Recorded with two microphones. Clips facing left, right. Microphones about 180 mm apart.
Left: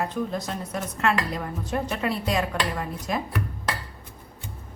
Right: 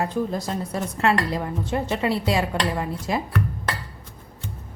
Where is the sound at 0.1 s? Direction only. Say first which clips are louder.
Right 3 dB; 35° right (ahead or behind).